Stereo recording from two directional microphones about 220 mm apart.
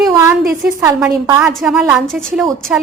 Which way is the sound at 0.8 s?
10° right (ahead or behind).